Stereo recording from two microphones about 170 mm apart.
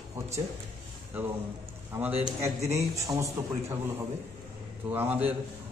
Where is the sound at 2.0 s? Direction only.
10° right (ahead or behind).